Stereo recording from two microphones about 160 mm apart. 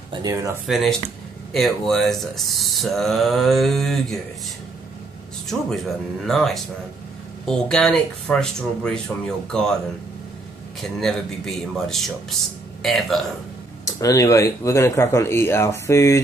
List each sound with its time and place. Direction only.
0.1 s speech: 20° right (ahead or behind)
0.7 s speech: centre (ahead or behind)
5.5 s speech: centre (ahead or behind)
10.8 s speech: centre (ahead or behind)
13.8 s speech: 20° left (ahead or behind)